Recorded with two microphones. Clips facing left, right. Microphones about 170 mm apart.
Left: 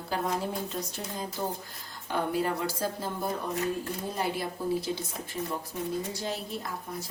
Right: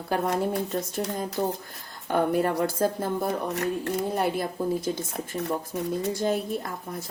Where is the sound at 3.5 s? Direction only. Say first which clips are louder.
Right 4 dB; 75° right (ahead or behind).